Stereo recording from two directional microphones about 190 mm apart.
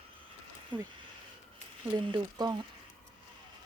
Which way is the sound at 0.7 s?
25° right (ahead or behind).